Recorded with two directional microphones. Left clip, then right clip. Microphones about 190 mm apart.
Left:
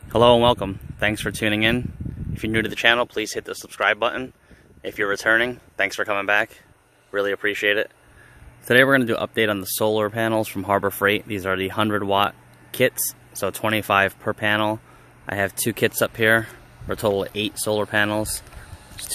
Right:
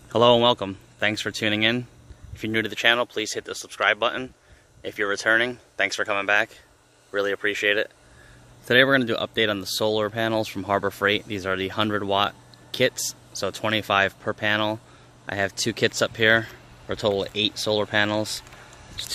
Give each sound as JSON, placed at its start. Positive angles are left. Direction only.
{"t": 0.1, "sound": "speech", "side_deg": 15}